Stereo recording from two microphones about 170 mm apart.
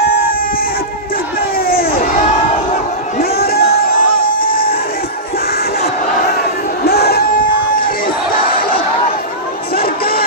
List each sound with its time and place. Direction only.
1.5 s crowd: 60° left (ahead or behind)
3.3 s crowd: 65° left (ahead or behind)
6.8 s music: 65° left (ahead or behind)
9.7 s a sound: 60° left (ahead or behind)